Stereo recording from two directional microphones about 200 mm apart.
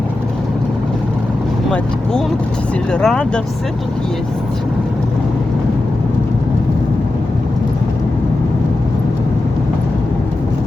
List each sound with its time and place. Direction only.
2.9 s speech: 5° left (ahead or behind)